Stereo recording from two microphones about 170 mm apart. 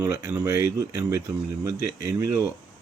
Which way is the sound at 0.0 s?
15° right (ahead or behind).